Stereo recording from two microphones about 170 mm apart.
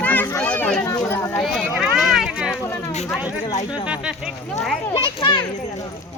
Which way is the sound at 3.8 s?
5° right (ahead or behind).